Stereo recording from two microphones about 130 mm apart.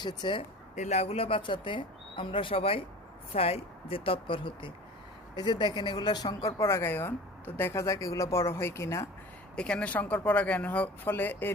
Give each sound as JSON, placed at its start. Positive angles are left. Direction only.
{"t": 0.0, "sound": "speech", "side_deg": 35}
{"t": 0.8, "sound": "a woman's voice", "side_deg": 55}
{"t": 9.6, "sound": "speech", "side_deg": 10}